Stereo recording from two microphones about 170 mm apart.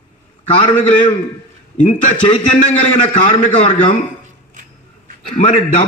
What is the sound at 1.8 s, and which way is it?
A man's voice, 45° left (ahead or behind).